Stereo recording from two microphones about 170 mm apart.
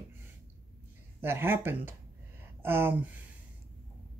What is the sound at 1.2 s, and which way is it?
Speech, 15° right (ahead or behind).